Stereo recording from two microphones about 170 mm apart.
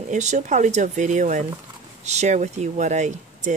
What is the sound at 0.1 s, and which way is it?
Speech, 45° right (ahead or behind).